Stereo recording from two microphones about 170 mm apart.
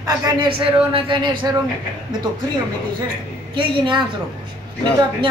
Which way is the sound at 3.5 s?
30° right (ahead or behind).